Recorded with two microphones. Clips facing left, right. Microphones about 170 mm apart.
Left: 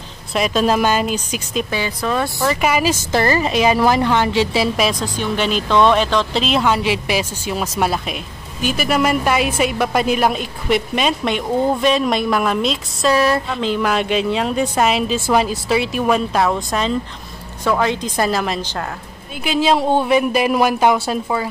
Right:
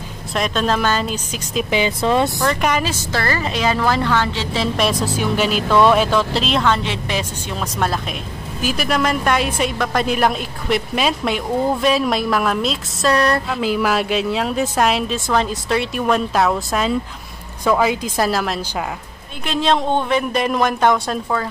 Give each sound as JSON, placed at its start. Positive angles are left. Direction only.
{"t": 0.3, "sound": "speech", "side_deg": 5}
{"t": 1.7, "sound": "speech", "side_deg": -20}
{"t": 2.4, "sound": "a woman's voice", "side_deg": 5}